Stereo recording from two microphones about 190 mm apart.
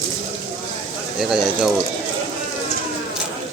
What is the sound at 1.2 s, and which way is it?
Speech, centre (ahead or behind).